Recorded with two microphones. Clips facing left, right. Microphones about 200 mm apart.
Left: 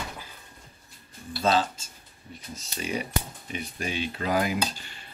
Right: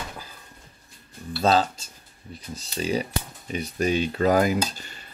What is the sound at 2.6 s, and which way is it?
Speech, 35° right (ahead or behind).